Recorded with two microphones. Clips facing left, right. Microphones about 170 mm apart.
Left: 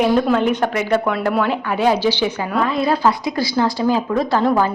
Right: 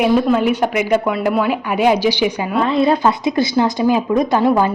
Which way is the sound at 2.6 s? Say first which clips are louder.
Right 3 dB; 25° right (ahead or behind).